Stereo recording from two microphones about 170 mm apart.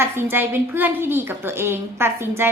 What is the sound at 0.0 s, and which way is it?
A woman's voice, 15° right (ahead or behind).